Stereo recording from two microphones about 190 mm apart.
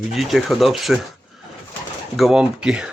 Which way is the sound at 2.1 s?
Centre (ahead or behind).